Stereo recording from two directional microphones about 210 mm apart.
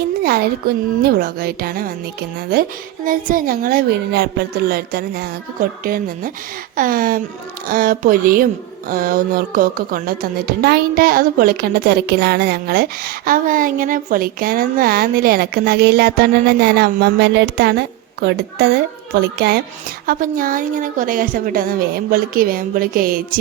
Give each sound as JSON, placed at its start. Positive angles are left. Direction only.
{"t": 0.2, "sound": "speech", "side_deg": -45}
{"t": 1.0, "sound": "music", "side_deg": -45}
{"t": 20.1, "sound": "a woman's voice", "side_deg": -40}